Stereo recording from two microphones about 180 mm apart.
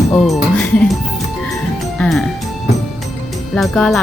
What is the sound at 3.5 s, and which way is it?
Speech, 5° left (ahead or behind).